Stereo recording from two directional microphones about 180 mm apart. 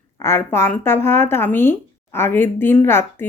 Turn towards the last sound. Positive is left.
turn(degrees=15)  # may be behind; listen again after turning